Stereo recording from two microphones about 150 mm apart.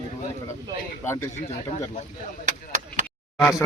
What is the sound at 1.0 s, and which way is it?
Speech, 15° left (ahead or behind).